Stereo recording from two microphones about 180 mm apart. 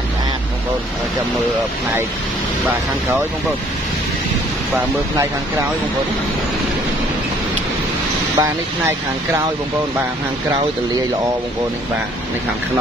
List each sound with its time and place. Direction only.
8.4 s speech: 15° right (ahead or behind)